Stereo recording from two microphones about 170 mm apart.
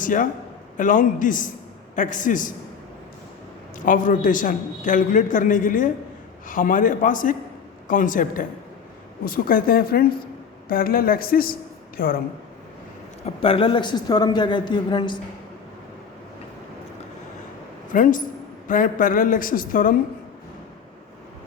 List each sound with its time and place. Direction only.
0.0 s a man's voice: 50° left (ahead or behind)
3.8 s a man's voice: 50° left (ahead or behind)
13.2 s a man's voice: 30° left (ahead or behind)
17.9 s a man's voice: 50° left (ahead or behind)